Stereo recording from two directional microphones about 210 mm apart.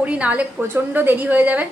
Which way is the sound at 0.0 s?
5° right (ahead or behind).